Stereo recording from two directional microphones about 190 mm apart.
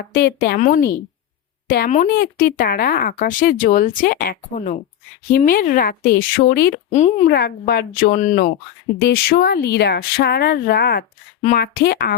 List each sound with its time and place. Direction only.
0.1 s speech: 55° left (ahead or behind)
2.1 s speech: 50° left (ahead or behind)
6.9 s speech: 35° left (ahead or behind)
7.3 s speech: 55° left (ahead or behind)
9.0 s speech: 60° left (ahead or behind)